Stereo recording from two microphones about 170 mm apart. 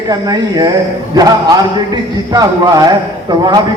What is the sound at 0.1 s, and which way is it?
A man's voice, 20° right (ahead or behind).